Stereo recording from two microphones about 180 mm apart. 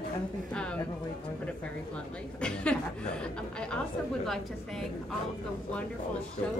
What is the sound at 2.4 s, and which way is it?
Speech, 5° left (ahead or behind).